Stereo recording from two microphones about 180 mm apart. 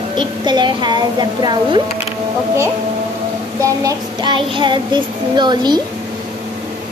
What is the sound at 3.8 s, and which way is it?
A woman's voice, 25° right (ahead or behind).